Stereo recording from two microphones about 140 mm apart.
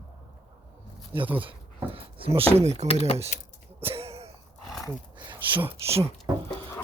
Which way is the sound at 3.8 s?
45° right (ahead or behind).